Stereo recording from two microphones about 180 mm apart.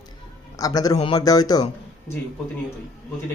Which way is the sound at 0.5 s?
20° left (ahead or behind).